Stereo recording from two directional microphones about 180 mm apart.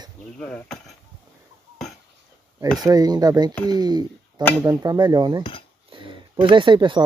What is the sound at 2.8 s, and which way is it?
Speech, 20° right (ahead or behind).